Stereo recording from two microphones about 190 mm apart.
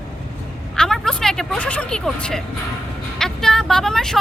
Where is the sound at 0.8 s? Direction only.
Centre (ahead or behind).